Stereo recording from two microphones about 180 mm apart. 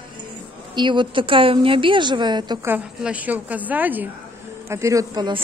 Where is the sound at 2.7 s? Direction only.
5° right (ahead or behind).